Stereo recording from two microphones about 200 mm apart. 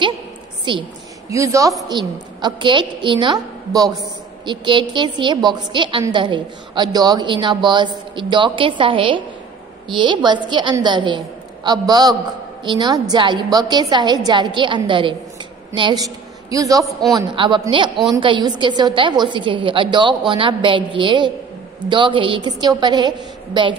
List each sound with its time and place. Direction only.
0.7 s a woman's voice: 25° right (ahead or behind)